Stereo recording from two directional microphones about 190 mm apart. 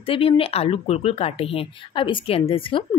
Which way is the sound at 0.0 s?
30° left (ahead or behind).